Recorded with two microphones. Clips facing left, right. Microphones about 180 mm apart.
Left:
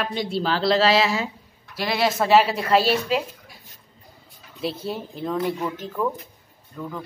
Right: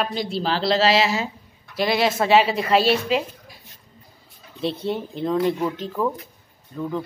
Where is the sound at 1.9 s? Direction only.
Centre (ahead or behind).